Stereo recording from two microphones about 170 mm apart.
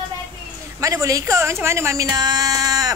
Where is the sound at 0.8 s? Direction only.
20° right (ahead or behind).